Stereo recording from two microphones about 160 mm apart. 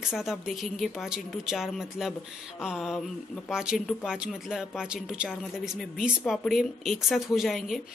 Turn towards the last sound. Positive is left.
turn(degrees=0)  # may be behind; listen again after turning